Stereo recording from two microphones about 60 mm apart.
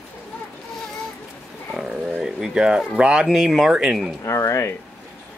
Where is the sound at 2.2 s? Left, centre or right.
Centre.